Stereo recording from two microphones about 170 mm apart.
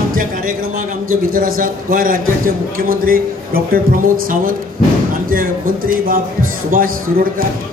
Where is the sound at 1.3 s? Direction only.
55° right (ahead or behind).